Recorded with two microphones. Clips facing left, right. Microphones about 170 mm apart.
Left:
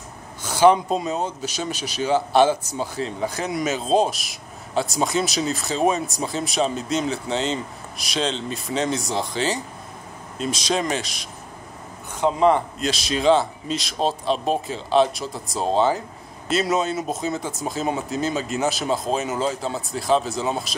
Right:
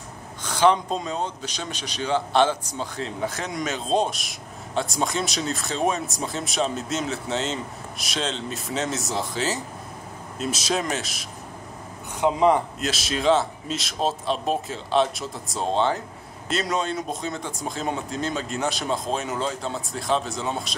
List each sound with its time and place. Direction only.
0.4 s speech: 10° left (ahead or behind)
12.2 s speech: 15° right (ahead or behind); by 20.7 s centre (ahead or behind)